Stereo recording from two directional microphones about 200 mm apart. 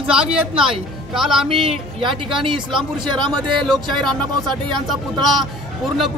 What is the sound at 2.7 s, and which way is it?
Speech, 25° right (ahead or behind).